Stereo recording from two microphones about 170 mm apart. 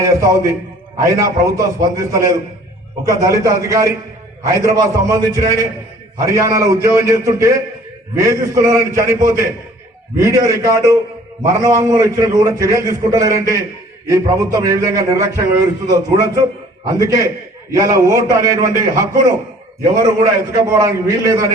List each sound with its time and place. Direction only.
0.0 s a man's voice: 20° right (ahead or behind)